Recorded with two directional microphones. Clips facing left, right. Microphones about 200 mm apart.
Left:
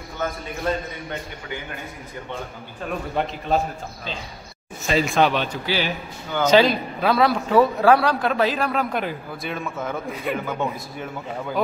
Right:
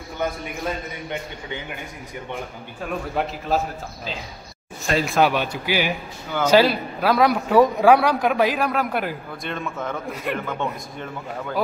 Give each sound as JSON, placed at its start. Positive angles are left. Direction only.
{"t": 0.2, "sound": "speech", "side_deg": -15}
{"t": 3.2, "sound": "a man's voice", "side_deg": -5}
{"t": 9.5, "sound": "a man's voice", "side_deg": 5}